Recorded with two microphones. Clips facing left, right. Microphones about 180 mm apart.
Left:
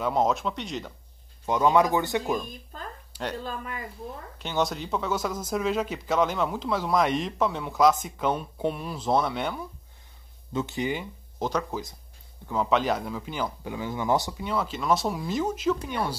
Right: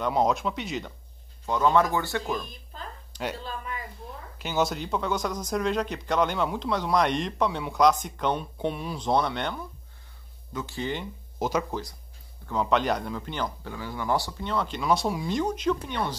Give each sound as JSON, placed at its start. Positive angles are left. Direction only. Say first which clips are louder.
{"t": 0.0, "sound": "speech", "louder": "even", "side_deg": 0}
{"t": 1.4, "sound": "speech", "louder": "left 1 dB", "side_deg": 15}
{"t": 2.7, "sound": "a sound", "louder": "left 1 dB", "side_deg": 45}
{"t": 3.4, "sound": "speech", "louder": "left 1 dB", "side_deg": 45}
{"t": 4.4, "sound": "speech", "louder": "right 1 dB", "side_deg": -5}
{"t": 10.5, "sound": "speech", "louder": "left 4 dB", "side_deg": 20}
{"t": 11.3, "sound": "speech", "louder": "right 1 dB", "side_deg": -10}
{"t": 12.4, "sound": "speech", "louder": "even", "side_deg": 0}
{"t": 13.7, "sound": "speech", "louder": "left 2 dB", "side_deg": 20}
{"t": 14.4, "sound": "speech", "louder": "even", "side_deg": 5}